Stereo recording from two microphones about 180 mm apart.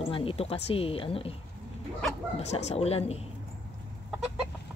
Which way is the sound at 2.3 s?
35° left (ahead or behind).